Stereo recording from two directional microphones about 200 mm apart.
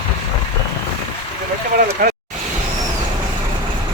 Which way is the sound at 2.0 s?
45° right (ahead or behind).